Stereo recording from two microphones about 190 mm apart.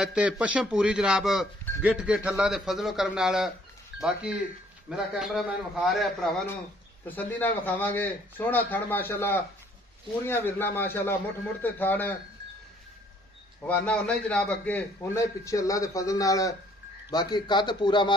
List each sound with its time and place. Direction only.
0.0 s a man's voice: centre (ahead or behind)
13.7 s a man's voice: 5° left (ahead or behind); by 18.1 s 25° left (ahead or behind)